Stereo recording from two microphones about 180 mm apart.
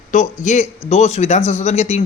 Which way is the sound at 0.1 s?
45° left (ahead or behind).